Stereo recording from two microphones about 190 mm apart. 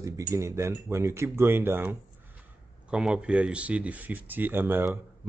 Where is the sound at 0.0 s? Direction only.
15° right (ahead or behind).